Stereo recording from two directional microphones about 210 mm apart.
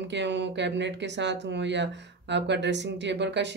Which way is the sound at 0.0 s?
55° right (ahead or behind).